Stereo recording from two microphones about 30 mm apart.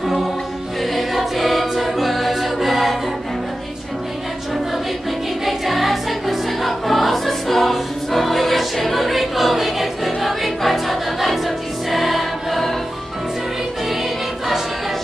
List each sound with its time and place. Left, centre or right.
0.0 s music: centre
1.1 s choir: centre
5.4 s music: centre
13.8 s music: centre